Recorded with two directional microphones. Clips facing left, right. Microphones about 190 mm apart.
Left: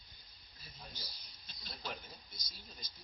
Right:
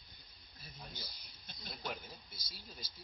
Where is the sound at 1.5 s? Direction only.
55° right (ahead or behind).